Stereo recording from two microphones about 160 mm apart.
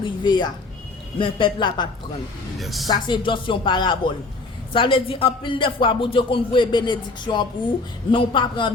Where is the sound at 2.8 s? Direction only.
25° left (ahead or behind).